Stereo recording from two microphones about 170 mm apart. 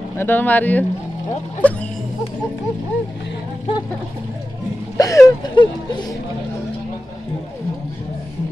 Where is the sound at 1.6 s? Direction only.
10° left (ahead or behind).